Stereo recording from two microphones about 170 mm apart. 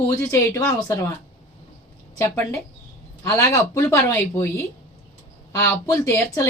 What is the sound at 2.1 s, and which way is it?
Speech, 15° left (ahead or behind).